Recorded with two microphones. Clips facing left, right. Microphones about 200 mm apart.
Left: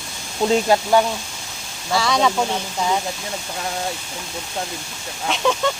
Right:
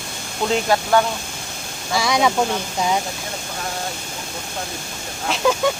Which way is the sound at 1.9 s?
15° right (ahead or behind).